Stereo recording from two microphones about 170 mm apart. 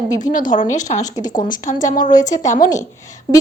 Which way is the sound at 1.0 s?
20° left (ahead or behind).